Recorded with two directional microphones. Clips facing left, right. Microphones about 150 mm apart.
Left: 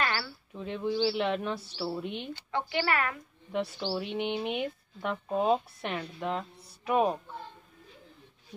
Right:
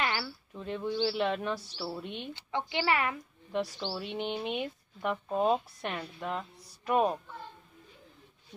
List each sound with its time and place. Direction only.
0.0 s a sound: 20° right (ahead or behind)
0.6 s speech: centre (ahead or behind)
2.3 s a woman's voice: 20° right (ahead or behind)
3.5 s speech: 5° left (ahead or behind)